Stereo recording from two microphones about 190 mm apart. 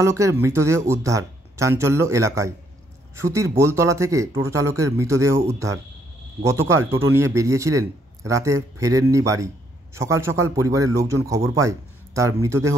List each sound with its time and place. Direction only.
0.0 s a man's voice: 15° right (ahead or behind)